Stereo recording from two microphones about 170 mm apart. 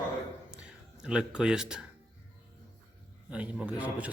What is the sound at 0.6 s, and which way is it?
Speech, 5° right (ahead or behind).